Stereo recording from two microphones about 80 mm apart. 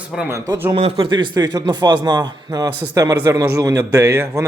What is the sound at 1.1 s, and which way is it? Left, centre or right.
A man's voice, right.